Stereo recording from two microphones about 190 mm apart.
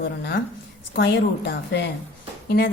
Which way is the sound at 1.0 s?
60° left (ahead or behind).